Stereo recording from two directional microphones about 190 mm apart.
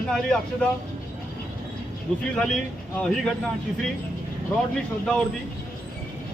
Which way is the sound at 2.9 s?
5° left (ahead or behind).